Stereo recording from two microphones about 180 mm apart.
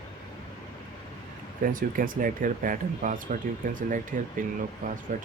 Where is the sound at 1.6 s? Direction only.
50° right (ahead or behind).